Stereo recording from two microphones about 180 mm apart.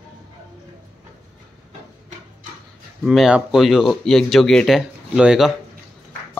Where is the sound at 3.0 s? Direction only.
Centre (ahead or behind).